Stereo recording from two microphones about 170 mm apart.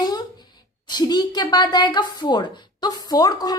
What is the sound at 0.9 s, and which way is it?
A woman's voice, 25° left (ahead or behind).